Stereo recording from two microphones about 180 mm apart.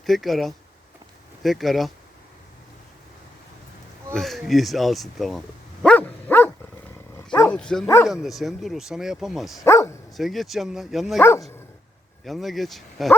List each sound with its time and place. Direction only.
0.0 s speech: centre (ahead or behind)
4.1 s speech: centre (ahead or behind)
5.8 s dog: 5° left (ahead or behind)
8.0 s speech: centre (ahead or behind)
9.6 s bow-wow: 15° left (ahead or behind)
10.2 s speech: centre (ahead or behind)
11.2 s speech: 15° left (ahead or behind)
12.2 s speech: centre (ahead or behind)